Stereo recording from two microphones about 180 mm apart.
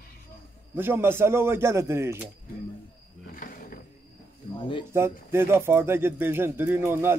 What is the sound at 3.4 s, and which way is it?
Speech, 50° left (ahead or behind).